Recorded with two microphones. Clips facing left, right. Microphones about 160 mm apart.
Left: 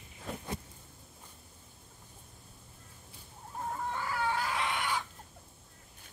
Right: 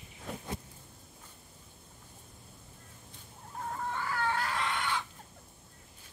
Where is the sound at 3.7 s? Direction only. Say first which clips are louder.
Even; 10° left (ahead or behind).